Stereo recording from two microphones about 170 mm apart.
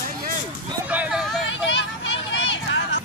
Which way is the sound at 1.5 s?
90° left.